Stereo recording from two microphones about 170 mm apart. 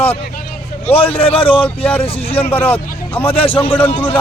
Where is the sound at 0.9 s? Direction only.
35° left (ahead or behind).